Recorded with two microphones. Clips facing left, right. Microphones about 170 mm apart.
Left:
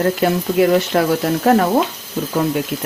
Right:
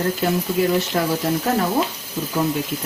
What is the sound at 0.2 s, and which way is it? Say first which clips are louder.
Speech: left 5 dB; 70° left (ahead or behind).